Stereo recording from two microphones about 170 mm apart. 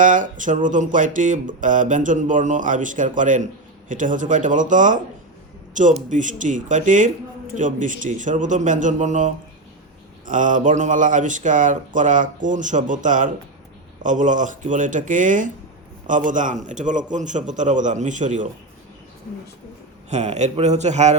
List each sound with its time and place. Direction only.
0.0 s speech: 50° right (ahead or behind)
20.1 s a man's voice: 40° right (ahead or behind)